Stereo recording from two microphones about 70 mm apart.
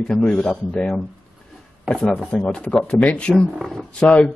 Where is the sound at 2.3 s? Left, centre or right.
Centre.